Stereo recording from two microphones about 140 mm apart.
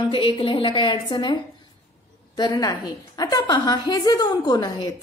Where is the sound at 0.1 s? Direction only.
40° left (ahead or behind).